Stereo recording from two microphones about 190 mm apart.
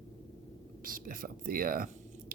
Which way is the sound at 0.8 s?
45° right (ahead or behind).